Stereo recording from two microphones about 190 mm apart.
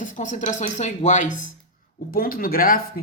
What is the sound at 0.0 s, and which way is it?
Speech, 40° left (ahead or behind).